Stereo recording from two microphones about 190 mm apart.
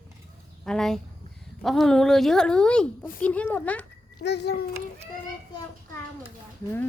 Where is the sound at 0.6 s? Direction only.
5° left (ahead or behind).